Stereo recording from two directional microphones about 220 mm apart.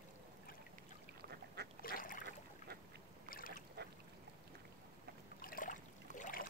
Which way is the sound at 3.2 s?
40° left (ahead or behind).